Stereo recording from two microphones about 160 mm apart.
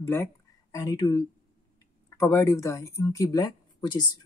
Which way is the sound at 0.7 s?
25° left (ahead or behind).